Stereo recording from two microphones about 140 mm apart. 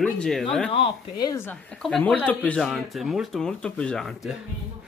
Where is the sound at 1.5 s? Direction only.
10° left (ahead or behind).